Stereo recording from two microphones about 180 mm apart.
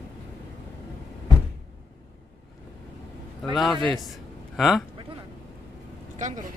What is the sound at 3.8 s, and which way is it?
Speech, centre (ahead or behind).